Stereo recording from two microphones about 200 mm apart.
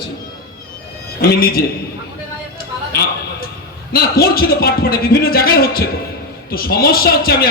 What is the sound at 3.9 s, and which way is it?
A man's voice, 50° left (ahead or behind).